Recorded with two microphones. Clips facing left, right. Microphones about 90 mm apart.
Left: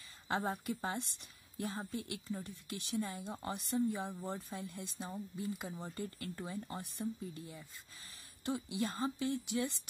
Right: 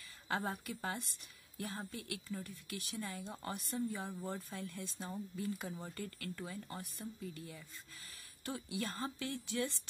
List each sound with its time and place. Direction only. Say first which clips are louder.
0.3 s a woman's voice: left 3 dB; 25° left (ahead or behind)